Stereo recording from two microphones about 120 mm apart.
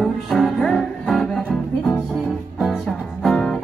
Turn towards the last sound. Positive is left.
turn(degrees=5)  # may be behind; listen again after turning